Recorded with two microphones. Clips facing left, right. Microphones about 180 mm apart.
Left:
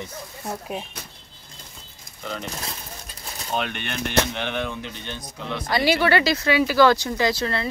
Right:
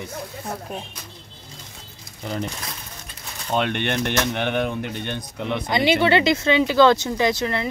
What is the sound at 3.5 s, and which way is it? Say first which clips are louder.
Speech: right 6 dB; 60° right (ahead or behind).